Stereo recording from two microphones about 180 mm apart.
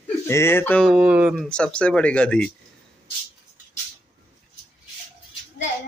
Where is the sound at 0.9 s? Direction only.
5° right (ahead or behind).